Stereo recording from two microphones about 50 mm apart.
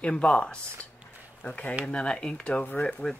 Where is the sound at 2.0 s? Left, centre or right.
Centre.